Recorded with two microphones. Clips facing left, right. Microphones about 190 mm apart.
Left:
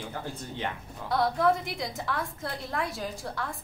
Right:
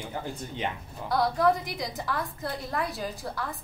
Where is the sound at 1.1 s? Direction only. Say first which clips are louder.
Right 1 dB; centre (ahead or behind).